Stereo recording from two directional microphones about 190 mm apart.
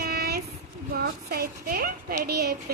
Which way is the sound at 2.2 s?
55° right (ahead or behind).